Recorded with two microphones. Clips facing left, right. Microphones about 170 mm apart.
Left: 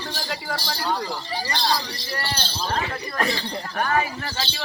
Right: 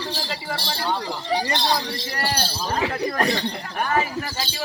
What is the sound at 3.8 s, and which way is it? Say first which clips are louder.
Speech: right 1 dB; 10° right (ahead or behind).